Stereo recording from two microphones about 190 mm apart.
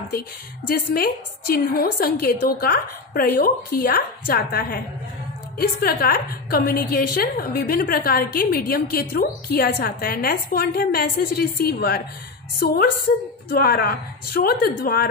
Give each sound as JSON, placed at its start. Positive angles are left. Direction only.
{"t": 0.7, "sound": "a woman's voice", "side_deg": 50}